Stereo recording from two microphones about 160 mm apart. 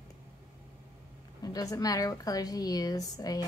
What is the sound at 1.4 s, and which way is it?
A woman's voice, 20° left (ahead or behind).